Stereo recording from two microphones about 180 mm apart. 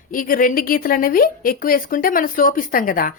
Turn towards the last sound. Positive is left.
turn(degrees=50)  # may be behind; listen again after turning